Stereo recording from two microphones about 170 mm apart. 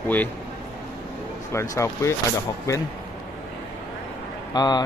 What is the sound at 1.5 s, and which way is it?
Speech, 15° left (ahead or behind).